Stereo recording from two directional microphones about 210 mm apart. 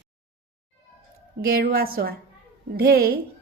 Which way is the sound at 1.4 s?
45° right (ahead or behind).